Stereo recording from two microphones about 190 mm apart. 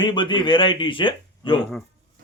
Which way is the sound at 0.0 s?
25° left (ahead or behind).